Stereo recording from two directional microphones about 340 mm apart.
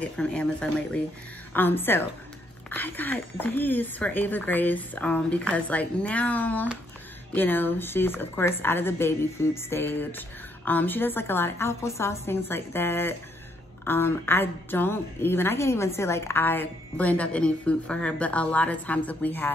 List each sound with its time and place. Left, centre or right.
0.0 s a woman's voice: centre